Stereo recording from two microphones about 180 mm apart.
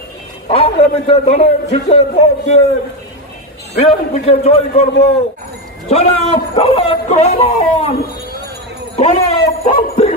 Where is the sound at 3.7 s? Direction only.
35° left (ahead or behind).